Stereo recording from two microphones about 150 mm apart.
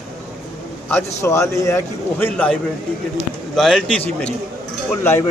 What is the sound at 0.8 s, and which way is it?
A man's voice, 15° left (ahead or behind).